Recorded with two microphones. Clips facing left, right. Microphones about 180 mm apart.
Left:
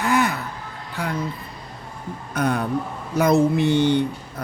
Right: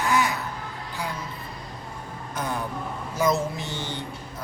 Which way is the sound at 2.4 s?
65° left (ahead or behind).